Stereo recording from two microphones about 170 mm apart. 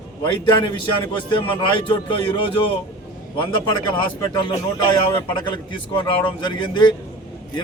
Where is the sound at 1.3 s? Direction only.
30° left (ahead or behind).